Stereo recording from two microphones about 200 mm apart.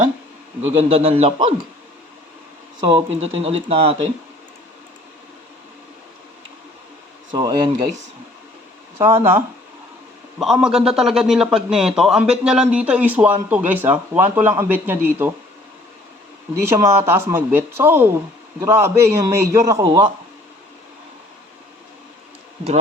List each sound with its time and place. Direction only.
0.7 s speech: 30° right (ahead or behind)
2.8 s speech: 30° right (ahead or behind)
7.3 s speech: 20° right (ahead or behind)
9.0 s speech: 10° right (ahead or behind)
16.6 s speech: 10° right (ahead or behind)